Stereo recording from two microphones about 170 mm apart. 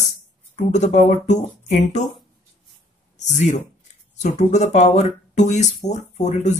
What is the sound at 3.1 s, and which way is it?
Speech, 45° left (ahead or behind).